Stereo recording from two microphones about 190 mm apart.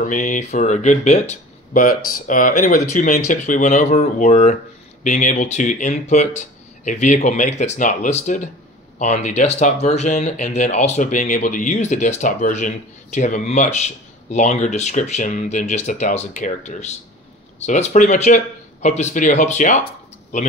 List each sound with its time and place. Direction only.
0.0 s speech: 40° left (ahead or behind)